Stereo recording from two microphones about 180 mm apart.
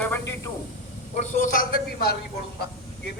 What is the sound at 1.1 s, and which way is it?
A man's voice, 40° left (ahead or behind).